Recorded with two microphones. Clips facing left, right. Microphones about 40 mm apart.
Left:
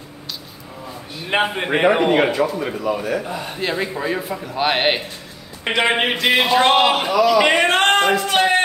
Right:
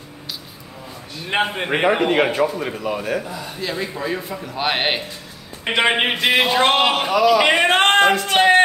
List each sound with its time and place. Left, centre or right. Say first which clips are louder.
1.1 s a man's voice: left 1 dB; centre
2.8 s speech: left 2 dB; right
3.3 s a man's voice: left 3 dB; left
3.7 s a man's voice: left 1 dB; centre
7.2 s a sound: right 1 dB; centre
8.3 s a sound: right 2 dB; right